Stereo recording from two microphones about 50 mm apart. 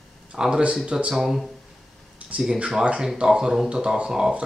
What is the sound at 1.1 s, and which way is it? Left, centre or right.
Speech, centre.